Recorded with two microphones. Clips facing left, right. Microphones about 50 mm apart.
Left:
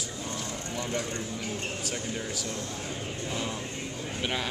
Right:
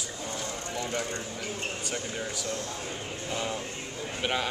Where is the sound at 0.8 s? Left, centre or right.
Centre.